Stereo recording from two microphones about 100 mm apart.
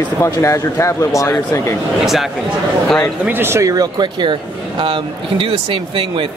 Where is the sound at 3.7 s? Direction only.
45° right (ahead or behind).